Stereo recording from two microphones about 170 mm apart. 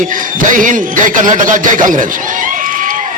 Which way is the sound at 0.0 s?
50° right (ahead or behind).